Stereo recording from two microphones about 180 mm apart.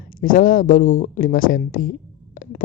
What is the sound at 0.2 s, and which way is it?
Speech, 50° left (ahead or behind).